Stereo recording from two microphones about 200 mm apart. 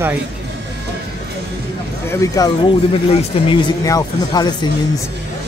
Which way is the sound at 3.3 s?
30° left (ahead or behind).